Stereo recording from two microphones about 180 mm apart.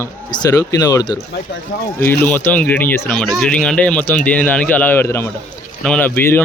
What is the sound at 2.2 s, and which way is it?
Speech, 10° left (ahead or behind).